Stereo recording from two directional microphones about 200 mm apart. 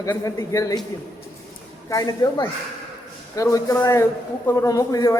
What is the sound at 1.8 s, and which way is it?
A man's voice, 20° left (ahead or behind).